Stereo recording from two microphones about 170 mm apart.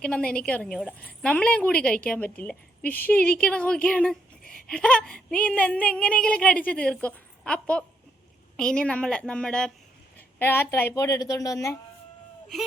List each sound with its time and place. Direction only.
0.0 s a woman's voice: 5° left (ahead or behind)